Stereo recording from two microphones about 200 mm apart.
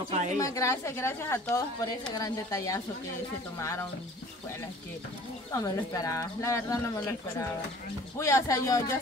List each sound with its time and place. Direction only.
0.1 s speech: 35° right (ahead or behind)
0.4 s speech: 15° left (ahead or behind)
5.5 s speech: 15° left (ahead or behind)
8.2 s speech: 15° left (ahead or behind)